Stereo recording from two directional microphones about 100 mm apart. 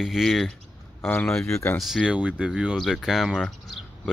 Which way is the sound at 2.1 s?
15° right (ahead or behind).